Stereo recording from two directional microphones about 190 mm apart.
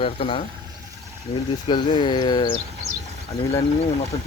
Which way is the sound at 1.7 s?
25° left (ahead or behind).